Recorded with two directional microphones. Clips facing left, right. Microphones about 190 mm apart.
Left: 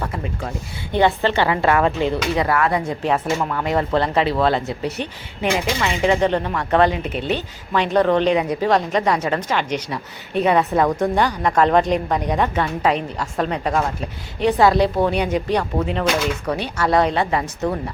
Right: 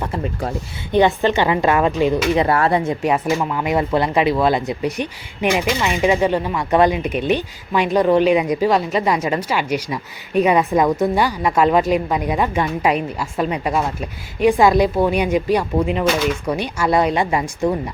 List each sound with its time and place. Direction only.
0.0 s speech: 30° right (ahead or behind)
0.9 s speech: 15° right (ahead or behind)
3.0 s speech: 10° right (ahead or behind)